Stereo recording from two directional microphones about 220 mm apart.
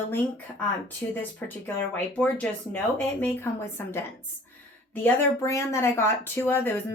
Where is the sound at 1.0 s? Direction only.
10° left (ahead or behind).